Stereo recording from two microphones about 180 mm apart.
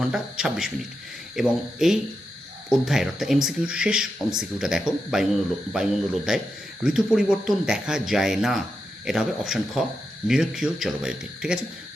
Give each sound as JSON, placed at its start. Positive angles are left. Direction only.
{"t": 0.0, "sound": "speech", "side_deg": -5}